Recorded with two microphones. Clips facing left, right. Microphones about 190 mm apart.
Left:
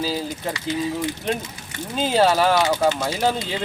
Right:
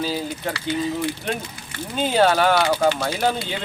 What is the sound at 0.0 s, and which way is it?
Speech, centre (ahead or behind).